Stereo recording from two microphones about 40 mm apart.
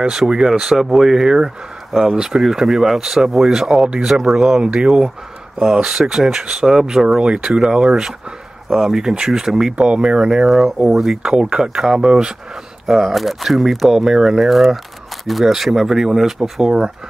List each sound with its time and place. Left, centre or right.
0.1 s speech: centre
4.4 s speech: centre
8.6 s speech: centre
9.8 s speech: right
10.4 s speech: centre
11.2 s speech: right
12.8 s speech: centre
13.9 s speech: centre